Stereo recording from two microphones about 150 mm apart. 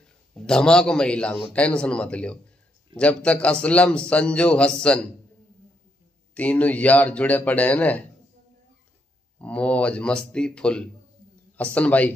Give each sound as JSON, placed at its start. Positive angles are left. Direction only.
{"t": 0.3, "sound": "a man's voice", "side_deg": 5}
{"t": 6.3, "sound": "a man's voice", "side_deg": 10}
{"t": 9.4, "sound": "a man's voice", "side_deg": 10}